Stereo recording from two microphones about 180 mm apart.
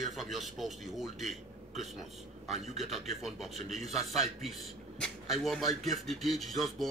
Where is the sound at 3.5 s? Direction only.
40° right (ahead or behind).